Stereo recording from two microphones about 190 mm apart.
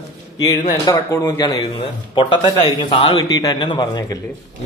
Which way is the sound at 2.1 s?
25° left (ahead or behind).